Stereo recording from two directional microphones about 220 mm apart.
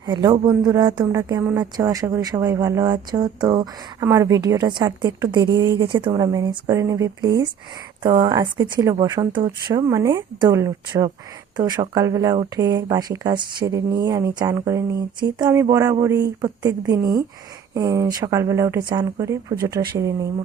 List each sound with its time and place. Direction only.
0.0 s speech: 20° right (ahead or behind)